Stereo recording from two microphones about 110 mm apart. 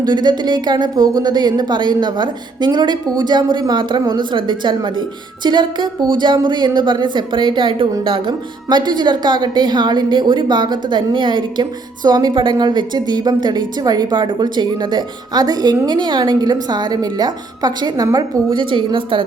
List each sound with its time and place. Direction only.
0.0 s a woman's voice: 40° right (ahead or behind)